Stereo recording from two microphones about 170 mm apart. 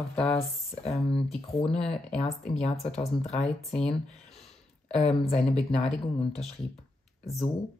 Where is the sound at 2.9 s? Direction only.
40° left (ahead or behind).